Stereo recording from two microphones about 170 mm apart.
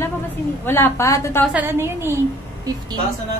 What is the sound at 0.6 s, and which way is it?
Speech, 15° left (ahead or behind).